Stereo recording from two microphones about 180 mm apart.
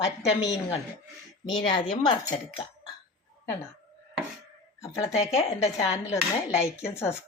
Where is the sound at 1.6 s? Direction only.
25° left (ahead or behind).